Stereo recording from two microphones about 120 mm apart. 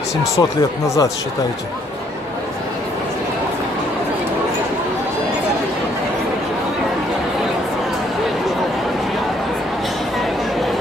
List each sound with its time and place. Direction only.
0.4 s speech: 30° left (ahead or behind)